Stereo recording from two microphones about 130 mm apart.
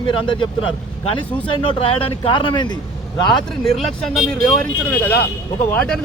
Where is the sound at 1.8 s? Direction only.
45° left (ahead or behind).